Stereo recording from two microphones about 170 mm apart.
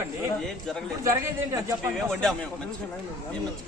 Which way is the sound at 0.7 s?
Centre (ahead or behind).